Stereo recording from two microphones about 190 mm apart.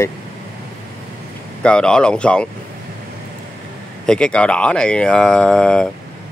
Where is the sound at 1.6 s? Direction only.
5° left (ahead or behind).